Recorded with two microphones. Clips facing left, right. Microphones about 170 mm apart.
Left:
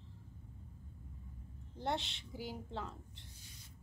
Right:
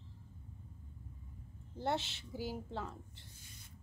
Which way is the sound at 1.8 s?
5° right (ahead or behind).